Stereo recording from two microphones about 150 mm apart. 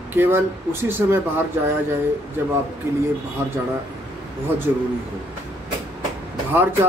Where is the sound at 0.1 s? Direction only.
15° right (ahead or behind).